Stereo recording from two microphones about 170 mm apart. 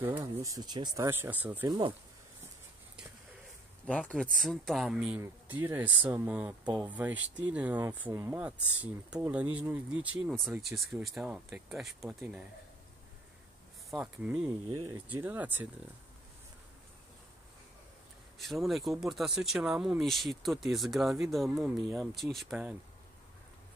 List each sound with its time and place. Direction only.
0.2 s speech: 20° right (ahead or behind)
1.7 s speech: 30° right (ahead or behind)
3.8 s speech: 5° left (ahead or behind)
13.8 s speech: 5° right (ahead or behind)
14.7 s speech: 25° right (ahead or behind)
15.2 s speech: 10° right (ahead or behind)
18.4 s speech: centre (ahead or behind)